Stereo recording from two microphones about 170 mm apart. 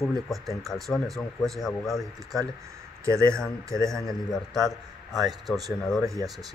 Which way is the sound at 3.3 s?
5° left (ahead or behind).